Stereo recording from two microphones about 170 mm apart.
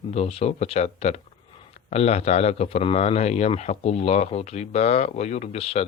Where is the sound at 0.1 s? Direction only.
40° left (ahead or behind).